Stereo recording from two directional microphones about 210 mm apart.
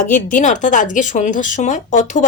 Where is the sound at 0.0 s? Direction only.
40° left (ahead or behind).